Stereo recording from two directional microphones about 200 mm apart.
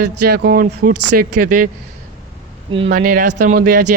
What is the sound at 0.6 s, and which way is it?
Speech, 40° right (ahead or behind).